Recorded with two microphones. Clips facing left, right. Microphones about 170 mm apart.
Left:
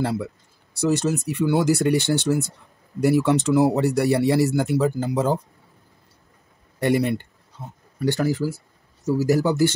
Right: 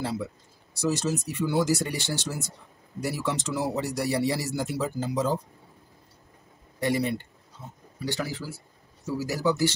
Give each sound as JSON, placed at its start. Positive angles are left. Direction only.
{"t": 0.7, "sound": "speech", "side_deg": 60}
{"t": 6.8, "sound": "speech", "side_deg": 60}